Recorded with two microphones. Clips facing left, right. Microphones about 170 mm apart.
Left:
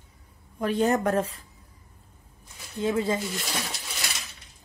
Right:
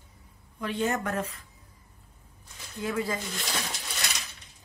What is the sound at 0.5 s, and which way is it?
Speech, 40° left (ahead or behind).